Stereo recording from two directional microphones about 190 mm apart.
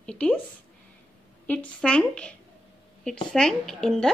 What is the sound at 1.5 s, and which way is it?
A woman's voice, 5° left (ahead or behind).